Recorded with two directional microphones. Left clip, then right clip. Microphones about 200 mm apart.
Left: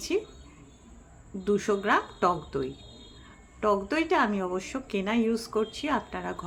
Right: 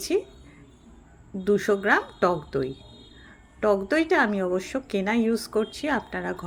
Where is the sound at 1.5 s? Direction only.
15° right (ahead or behind).